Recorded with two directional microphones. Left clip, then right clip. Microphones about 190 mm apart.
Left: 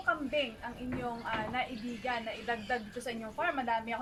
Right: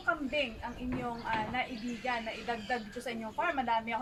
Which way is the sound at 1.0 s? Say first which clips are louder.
Right 1 dB; 10° right (ahead or behind).